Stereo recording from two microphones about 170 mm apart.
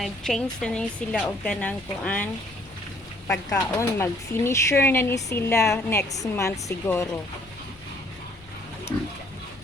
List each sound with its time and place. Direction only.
0.0 s speech: 5° left (ahead or behind)